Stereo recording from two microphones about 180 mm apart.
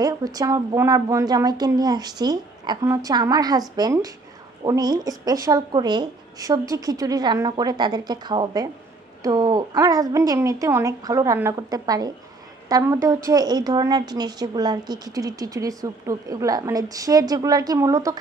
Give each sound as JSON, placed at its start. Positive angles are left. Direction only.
{"t": 0.0, "sound": "a woman's voice", "side_deg": -20}